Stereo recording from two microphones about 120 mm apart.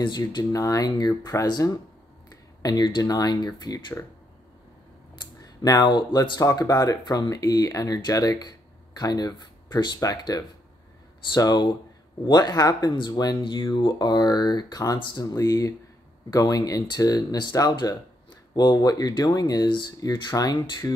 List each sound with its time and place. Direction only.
0.0 s speech: 35° left (ahead or behind)
5.2 s speech: 30° left (ahead or behind)